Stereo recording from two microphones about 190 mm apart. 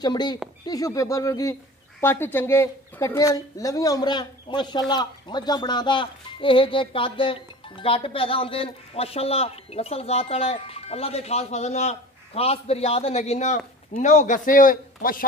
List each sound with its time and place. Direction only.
0.0 s a man's voice: 25° left (ahead or behind); by 15.2 s 50° left (ahead or behind)